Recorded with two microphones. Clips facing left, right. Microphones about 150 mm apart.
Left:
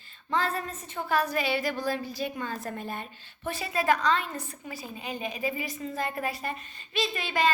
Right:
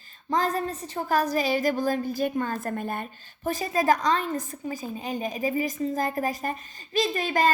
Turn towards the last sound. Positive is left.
turn(degrees=-45)  # may be behind; listen again after turning